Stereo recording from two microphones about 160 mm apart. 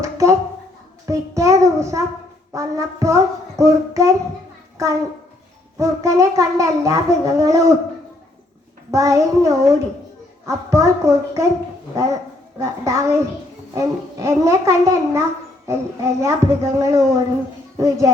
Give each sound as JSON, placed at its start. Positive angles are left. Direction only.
{"t": 0.0, "sound": "a child's voice", "side_deg": -20}
{"t": 5.7, "sound": "a child's voice", "side_deg": -20}
{"t": 8.9, "sound": "a child's voice", "side_deg": -20}
{"t": 12.5, "sound": "a child's voice", "side_deg": -20}